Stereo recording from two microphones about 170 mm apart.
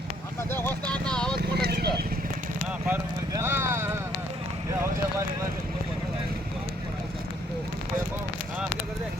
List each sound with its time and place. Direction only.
0.5 s vehicle: 10° left (ahead or behind)
1.4 s vehicle: 65° right (ahead or behind)
2.8 s clip-clop: 15° right (ahead or behind)